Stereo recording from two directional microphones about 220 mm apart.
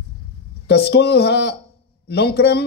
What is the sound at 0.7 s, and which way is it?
A woman's voice, 50° left (ahead or behind).